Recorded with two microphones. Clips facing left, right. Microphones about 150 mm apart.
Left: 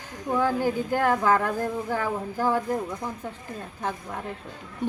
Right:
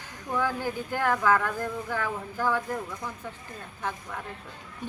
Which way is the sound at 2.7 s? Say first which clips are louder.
Left 5 dB; 25° left (ahead or behind).